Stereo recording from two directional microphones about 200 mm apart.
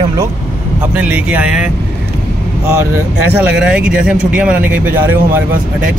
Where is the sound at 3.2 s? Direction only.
5° right (ahead or behind).